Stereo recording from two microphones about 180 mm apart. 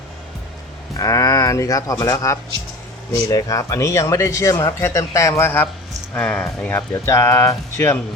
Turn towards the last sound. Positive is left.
turn(degrees=15)  # may be behind; listen again after turning